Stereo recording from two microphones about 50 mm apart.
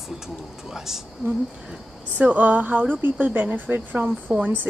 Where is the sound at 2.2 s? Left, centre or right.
Right.